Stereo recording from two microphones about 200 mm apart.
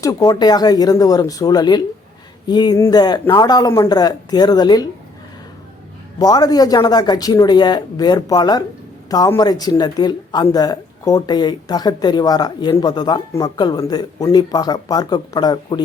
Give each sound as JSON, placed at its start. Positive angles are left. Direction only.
{"t": 0.0, "sound": "speech", "side_deg": 15}
{"t": 6.1, "sound": "speech", "side_deg": 20}